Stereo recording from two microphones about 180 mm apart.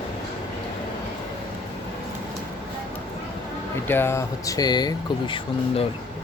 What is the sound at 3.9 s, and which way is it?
Speech, 15° left (ahead or behind).